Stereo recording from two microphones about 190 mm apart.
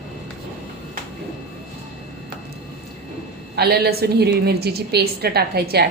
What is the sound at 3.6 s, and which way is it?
A woman's voice, 55° right (ahead or behind).